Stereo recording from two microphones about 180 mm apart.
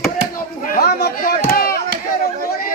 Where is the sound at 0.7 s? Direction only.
55° left (ahead or behind).